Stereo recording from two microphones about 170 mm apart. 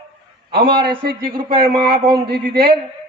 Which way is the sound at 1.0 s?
60° right (ahead or behind).